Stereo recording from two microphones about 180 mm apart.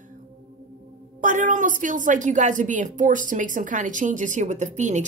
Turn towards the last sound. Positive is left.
turn(degrees=-40)  # may be behind; listen again after turning